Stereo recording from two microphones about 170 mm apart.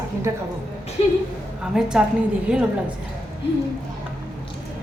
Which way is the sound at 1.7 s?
5° right (ahead or behind).